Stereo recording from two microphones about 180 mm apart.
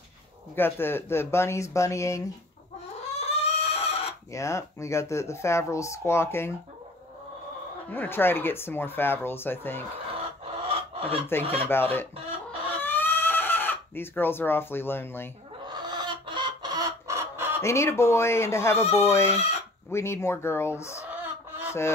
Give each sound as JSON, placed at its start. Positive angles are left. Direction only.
{"t": 0.6, "sound": "speech", "side_deg": 10}
{"t": 3.2, "sound": "chicken", "side_deg": 35}
{"t": 4.3, "sound": "speech", "side_deg": 15}
{"t": 7.9, "sound": "speech", "side_deg": 10}
{"t": 10.4, "sound": "a sound", "side_deg": -35}
{"t": 11.7, "sound": "speech", "side_deg": 10}
{"t": 12.8, "sound": "chicken", "side_deg": 10}
{"t": 15.7, "sound": "chicken", "side_deg": -25}
{"t": 17.6, "sound": "speech", "side_deg": 15}
{"t": 19.3, "sound": "speech", "side_deg": 35}
{"t": 19.9, "sound": "speech", "side_deg": 15}
{"t": 21.0, "sound": "a sound", "side_deg": -10}